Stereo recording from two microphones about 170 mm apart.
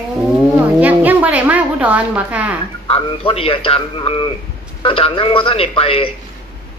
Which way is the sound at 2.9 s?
35° left (ahead or behind).